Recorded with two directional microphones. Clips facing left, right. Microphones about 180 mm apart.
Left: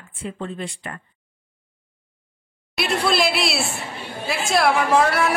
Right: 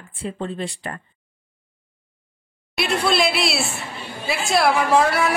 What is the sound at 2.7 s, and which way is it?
A man's voice, centre (ahead or behind).